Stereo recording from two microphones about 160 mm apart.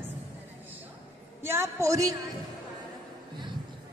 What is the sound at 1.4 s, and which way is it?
Speech, 15° right (ahead or behind).